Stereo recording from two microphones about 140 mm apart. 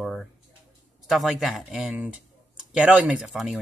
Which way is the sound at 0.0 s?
5° left (ahead or behind).